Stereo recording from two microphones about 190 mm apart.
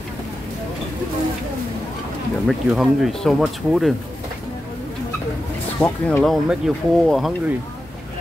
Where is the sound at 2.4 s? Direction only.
Centre (ahead or behind).